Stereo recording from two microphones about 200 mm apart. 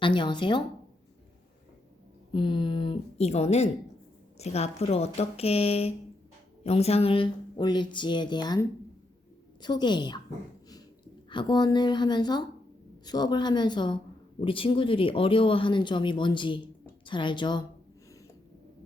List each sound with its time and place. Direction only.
0.0 s a woman's voice: 25° left (ahead or behind)
2.3 s a woman's voice: 25° left (ahead or behind)
11.3 s a woman's voice: 25° left (ahead or behind)